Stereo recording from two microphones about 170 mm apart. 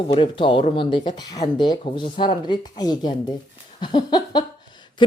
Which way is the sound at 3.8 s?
25° left (ahead or behind).